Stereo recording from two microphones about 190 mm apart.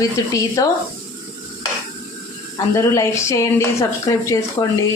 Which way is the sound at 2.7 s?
15° left (ahead or behind).